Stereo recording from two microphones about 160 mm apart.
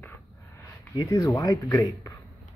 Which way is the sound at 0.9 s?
20° left (ahead or behind).